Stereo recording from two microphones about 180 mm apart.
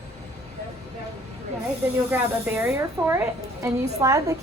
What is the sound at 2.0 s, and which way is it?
A woman's voice, 10° right (ahead or behind).